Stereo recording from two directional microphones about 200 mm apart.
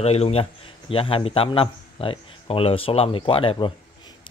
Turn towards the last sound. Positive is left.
turn(degrees=25)  # may be behind; listen again after turning